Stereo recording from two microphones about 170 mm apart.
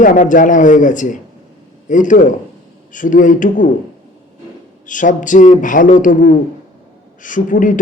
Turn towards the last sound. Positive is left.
turn(degrees=50)  # may be behind; listen again after turning